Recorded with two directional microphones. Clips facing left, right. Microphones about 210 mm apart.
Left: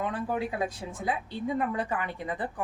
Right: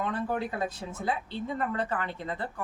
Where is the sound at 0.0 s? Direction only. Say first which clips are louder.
Even; 10° left (ahead or behind).